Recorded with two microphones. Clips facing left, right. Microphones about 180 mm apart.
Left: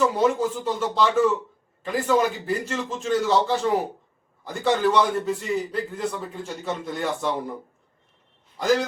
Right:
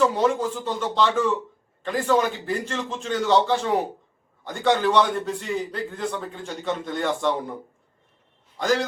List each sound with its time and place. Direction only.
0.0 s a man's voice: 10° left (ahead or behind)
8.5 s a man's voice: 5° left (ahead or behind)